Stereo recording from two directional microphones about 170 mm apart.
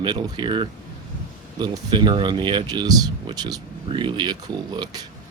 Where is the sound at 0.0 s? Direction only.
25° right (ahead or behind).